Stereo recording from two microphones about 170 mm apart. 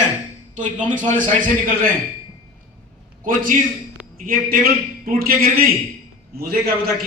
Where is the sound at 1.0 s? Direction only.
50° right (ahead or behind).